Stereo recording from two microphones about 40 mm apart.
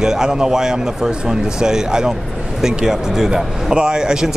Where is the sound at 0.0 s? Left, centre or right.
Centre.